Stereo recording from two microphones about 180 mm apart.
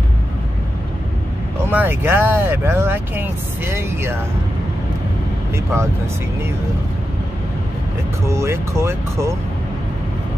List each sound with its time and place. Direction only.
1.7 s speech: 10° right (ahead or behind)
8.3 s speech: 15° right (ahead or behind)